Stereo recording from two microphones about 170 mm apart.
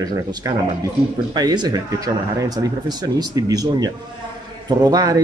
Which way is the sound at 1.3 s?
25° right (ahead or behind).